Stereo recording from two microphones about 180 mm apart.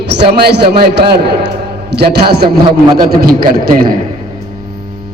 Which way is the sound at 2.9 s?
55° right (ahead or behind).